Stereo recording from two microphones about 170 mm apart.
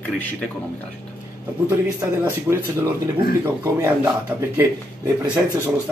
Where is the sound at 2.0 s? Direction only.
15° right (ahead or behind).